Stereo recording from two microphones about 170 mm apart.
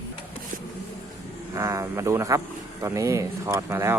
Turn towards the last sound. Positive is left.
turn(degrees=-15)  # may be behind; listen again after turning